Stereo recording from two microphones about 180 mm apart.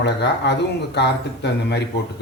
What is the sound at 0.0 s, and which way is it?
Speech, 70° left (ahead or behind).